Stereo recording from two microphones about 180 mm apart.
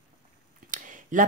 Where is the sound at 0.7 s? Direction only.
45° right (ahead or behind).